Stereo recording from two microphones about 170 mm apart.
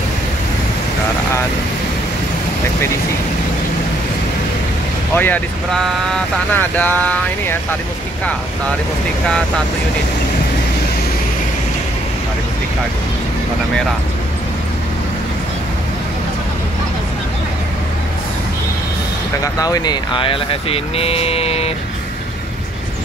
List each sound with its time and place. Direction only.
5.1 s speech: 10° left (ahead or behind)
19.4 s speech: 20° left (ahead or behind)